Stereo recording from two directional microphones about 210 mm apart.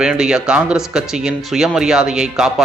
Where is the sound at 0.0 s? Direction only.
5° right (ahead or behind).